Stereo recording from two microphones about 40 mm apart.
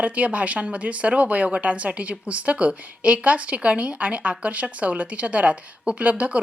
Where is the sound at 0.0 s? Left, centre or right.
Right.